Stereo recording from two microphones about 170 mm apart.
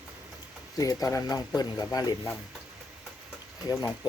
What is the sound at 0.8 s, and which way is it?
Speech, 20° left (ahead or behind).